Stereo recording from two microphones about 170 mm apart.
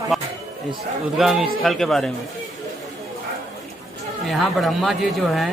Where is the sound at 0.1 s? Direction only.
Centre (ahead or behind).